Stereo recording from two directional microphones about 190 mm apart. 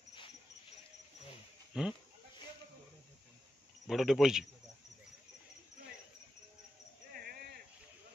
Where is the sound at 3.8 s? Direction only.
Centre (ahead or behind).